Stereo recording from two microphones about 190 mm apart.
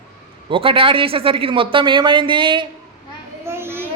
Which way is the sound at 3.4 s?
10° right (ahead or behind).